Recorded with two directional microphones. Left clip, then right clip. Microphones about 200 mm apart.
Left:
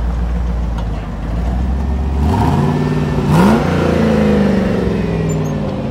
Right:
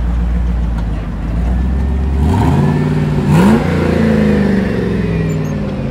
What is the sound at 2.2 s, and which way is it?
Vehicle, 25° left (ahead or behind).